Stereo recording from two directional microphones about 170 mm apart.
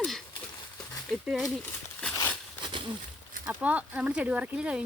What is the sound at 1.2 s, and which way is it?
Speech, centre (ahead or behind).